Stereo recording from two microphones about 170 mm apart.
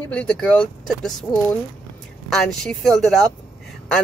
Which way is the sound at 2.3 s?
Centre (ahead or behind).